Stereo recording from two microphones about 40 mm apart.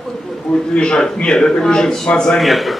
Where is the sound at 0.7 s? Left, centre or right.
Left.